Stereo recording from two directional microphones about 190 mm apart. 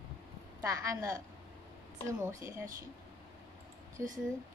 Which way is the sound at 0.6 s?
15° right (ahead or behind).